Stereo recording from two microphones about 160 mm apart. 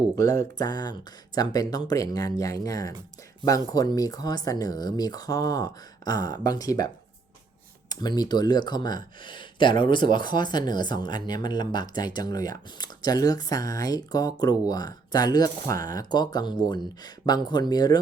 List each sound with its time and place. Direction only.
0.2 s speech: 20° left (ahead or behind)